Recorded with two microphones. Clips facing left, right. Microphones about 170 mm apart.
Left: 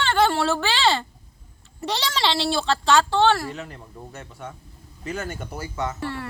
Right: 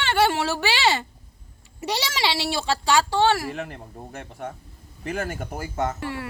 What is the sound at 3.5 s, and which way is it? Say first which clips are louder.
Speech: right 3 dB; 55° right (ahead or behind).